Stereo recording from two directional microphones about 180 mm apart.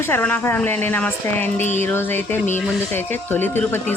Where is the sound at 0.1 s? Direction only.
10° left (ahead or behind).